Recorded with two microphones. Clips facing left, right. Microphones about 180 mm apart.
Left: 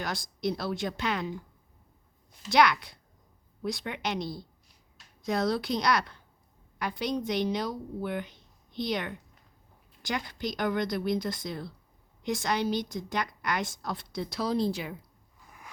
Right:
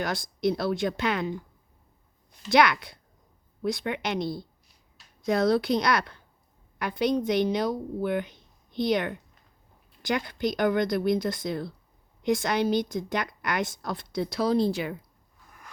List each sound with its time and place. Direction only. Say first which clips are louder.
0.0 s a woman's voice: right 5 dB; 55° right (ahead or behind)
2.5 s a woman's voice: right 2 dB; 55° right (ahead or behind)